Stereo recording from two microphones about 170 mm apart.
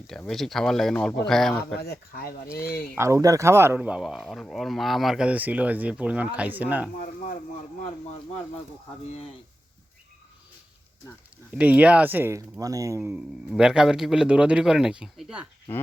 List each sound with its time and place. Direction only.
0.3 s a man's voice: centre (ahead or behind)
1.7 s speech: 65° left (ahead or behind)
3.0 s speech: 20° right (ahead or behind)
11.5 s speech: 10° right (ahead or behind)
13.0 s a man's voice: 5° right (ahead or behind)
15.7 s speech: 10° left (ahead or behind)